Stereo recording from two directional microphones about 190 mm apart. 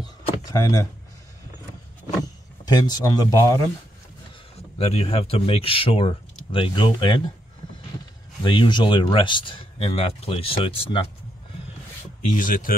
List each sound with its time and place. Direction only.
0.5 s speech: 20° left (ahead or behind)
2.6 s speech: 20° left (ahead or behind)
4.7 s speech: 30° left (ahead or behind)
8.5 s speech: 25° left (ahead or behind)
12.4 s speech: 45° left (ahead or behind)